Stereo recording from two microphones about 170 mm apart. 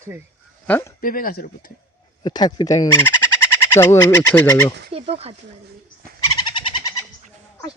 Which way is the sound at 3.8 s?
15° left (ahead or behind).